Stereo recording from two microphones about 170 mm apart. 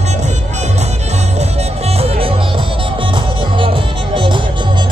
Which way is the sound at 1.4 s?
35° right (ahead or behind).